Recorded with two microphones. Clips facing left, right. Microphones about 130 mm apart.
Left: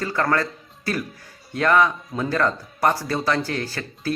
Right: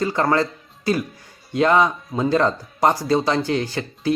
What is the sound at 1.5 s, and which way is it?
Speech, 20° right (ahead or behind).